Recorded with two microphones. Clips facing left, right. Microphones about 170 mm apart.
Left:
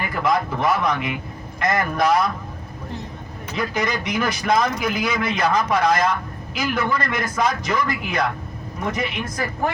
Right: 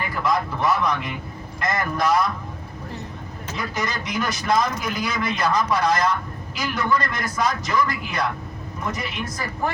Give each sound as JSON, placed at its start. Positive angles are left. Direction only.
{"t": 0.1, "sound": "speech", "side_deg": 60}
{"t": 3.5, "sound": "speech", "side_deg": 55}